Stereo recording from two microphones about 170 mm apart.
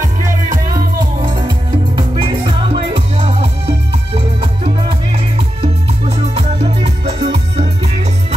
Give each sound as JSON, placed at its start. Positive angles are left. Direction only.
{"t": 1.2, "sound": "music", "side_deg": -30}